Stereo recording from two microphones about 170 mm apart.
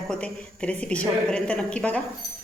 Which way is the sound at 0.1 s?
5° left (ahead or behind).